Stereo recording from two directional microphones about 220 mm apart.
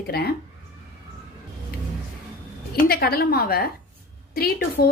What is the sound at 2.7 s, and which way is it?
Speech, 45° left (ahead or behind).